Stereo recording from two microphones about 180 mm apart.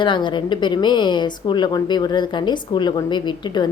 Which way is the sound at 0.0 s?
25° left (ahead or behind).